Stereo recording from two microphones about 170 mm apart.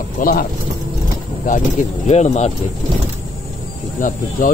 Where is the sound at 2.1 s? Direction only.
40° left (ahead or behind).